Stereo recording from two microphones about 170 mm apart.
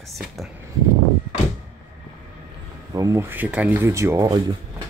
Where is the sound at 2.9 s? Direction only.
20° right (ahead or behind).